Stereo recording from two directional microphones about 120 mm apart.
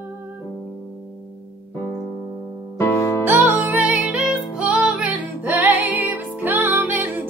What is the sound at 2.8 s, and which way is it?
Music, 25° left (ahead or behind).